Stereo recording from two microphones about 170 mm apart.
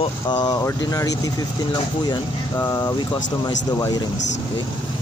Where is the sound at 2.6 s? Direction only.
25° left (ahead or behind).